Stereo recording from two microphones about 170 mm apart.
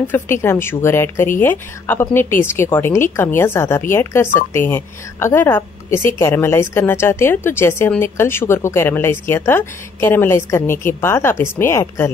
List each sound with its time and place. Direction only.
0.1 s speech: 15° left (ahead or behind)